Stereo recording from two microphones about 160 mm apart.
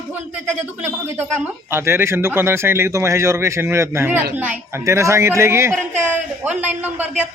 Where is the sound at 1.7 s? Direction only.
15° right (ahead or behind).